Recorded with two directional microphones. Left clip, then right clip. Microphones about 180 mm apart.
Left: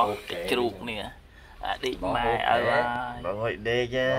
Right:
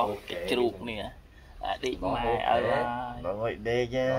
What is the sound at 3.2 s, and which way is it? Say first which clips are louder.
Speech: left 2 dB; 5° left (ahead or behind).